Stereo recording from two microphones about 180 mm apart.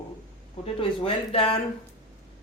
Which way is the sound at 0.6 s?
30° left (ahead or behind).